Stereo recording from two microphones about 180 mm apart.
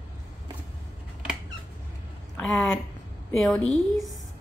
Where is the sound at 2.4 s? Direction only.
Centre (ahead or behind).